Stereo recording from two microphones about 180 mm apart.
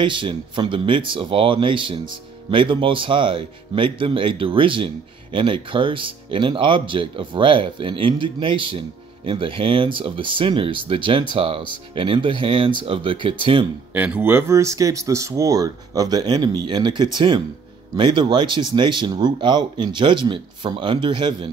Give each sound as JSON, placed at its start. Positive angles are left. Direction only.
{"t": 0.0, "sound": "speech", "side_deg": -25}
{"t": 13.9, "sound": "speech", "side_deg": -10}